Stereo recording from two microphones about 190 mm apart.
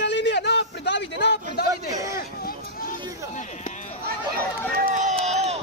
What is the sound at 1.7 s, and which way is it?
Speech, 20° right (ahead or behind).